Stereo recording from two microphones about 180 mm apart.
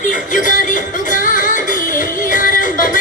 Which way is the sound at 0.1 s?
45° left (ahead or behind).